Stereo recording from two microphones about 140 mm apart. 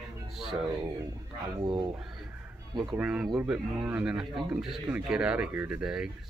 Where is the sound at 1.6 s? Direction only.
30° right (ahead or behind).